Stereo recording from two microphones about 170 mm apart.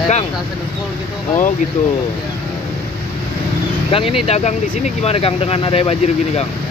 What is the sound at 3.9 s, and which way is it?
Speech, 35° left (ahead or behind).